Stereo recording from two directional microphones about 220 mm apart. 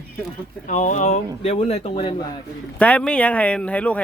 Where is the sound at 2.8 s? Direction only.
5° left (ahead or behind).